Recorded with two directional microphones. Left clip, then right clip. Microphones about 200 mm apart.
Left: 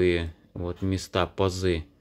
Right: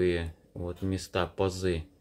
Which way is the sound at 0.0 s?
25° left (ahead or behind).